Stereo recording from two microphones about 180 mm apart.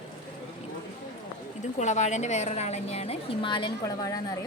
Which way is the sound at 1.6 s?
40° left (ahead or behind).